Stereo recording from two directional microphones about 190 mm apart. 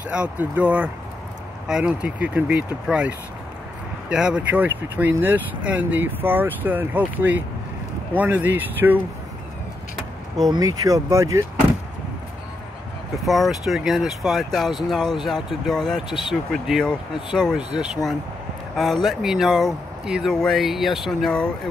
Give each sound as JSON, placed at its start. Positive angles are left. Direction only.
{"t": 0.1, "sound": "speech", "side_deg": -5}
{"t": 10.5, "sound": "speech", "side_deg": -20}
{"t": 13.2, "sound": "speech", "side_deg": 0}
{"t": 19.0, "sound": "speech", "side_deg": 0}